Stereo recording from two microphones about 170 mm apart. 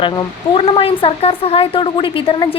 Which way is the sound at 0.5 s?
35° left (ahead or behind).